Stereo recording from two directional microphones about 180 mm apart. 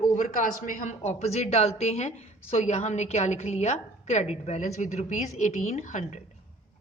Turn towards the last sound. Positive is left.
turn(degrees=40)  # may be behind; listen again after turning